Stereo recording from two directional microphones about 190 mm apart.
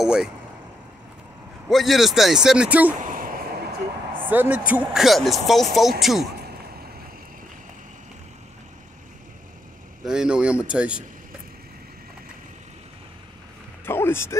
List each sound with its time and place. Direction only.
0.0 s speech: 5° right (ahead or behind)
1.7 s speech: centre (ahead or behind)
3.0 s a sound: 45° right (ahead or behind)
4.1 s speech: 10° right (ahead or behind)
10.0 s speech: 5° right (ahead or behind)
13.8 s speech: 10° left (ahead or behind)